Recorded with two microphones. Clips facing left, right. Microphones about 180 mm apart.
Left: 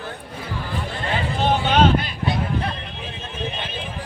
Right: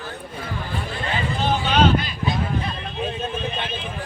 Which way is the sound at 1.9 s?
65° left (ahead or behind).